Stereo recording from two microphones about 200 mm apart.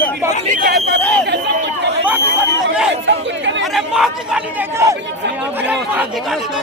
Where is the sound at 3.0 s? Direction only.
65° right (ahead or behind).